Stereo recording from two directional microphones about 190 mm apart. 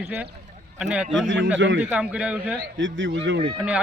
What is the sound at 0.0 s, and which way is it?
A man's voice, 5° right (ahead or behind).